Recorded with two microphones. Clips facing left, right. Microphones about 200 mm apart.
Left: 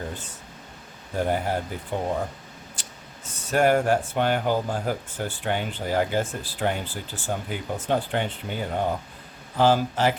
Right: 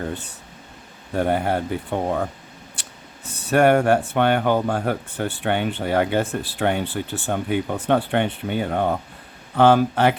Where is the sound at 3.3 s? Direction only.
65° right (ahead or behind).